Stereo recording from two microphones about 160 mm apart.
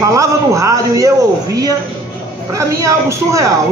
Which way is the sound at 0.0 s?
20° right (ahead or behind).